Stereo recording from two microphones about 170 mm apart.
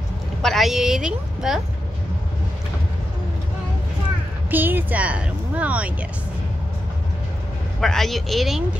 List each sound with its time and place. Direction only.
0.4 s a woman's voice: centre (ahead or behind)
4.5 s speech: 10° right (ahead or behind)
7.8 s a woman's voice: centre (ahead or behind)